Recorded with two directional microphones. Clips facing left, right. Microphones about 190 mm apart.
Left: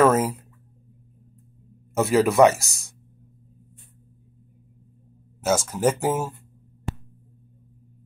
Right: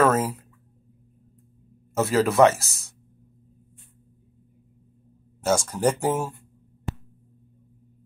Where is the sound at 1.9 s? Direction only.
15° left (ahead or behind).